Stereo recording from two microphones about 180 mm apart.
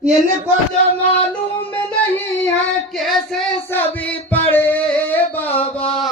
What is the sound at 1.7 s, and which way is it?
Music, 10° left (ahead or behind).